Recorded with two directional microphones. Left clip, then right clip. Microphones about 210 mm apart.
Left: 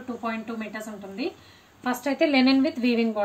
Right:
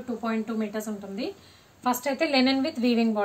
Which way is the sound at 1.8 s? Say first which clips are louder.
Left 1 dB; 55° right (ahead or behind).